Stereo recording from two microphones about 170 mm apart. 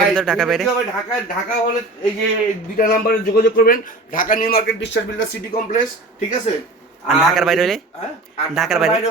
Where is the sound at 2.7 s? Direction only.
60° left (ahead or behind).